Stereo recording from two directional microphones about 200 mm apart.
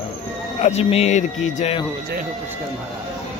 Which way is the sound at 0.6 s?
35° left (ahead or behind).